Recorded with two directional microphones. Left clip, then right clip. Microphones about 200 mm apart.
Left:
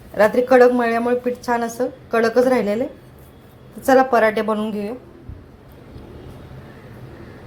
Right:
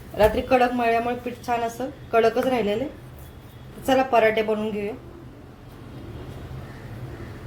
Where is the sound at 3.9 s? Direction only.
30° left (ahead or behind).